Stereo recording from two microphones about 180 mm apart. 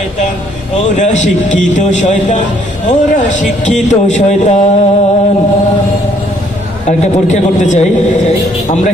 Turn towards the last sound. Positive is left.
turn(degrees=40)  # may be behind; listen again after turning